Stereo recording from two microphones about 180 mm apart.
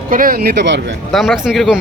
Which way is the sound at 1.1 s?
Centre (ahead or behind).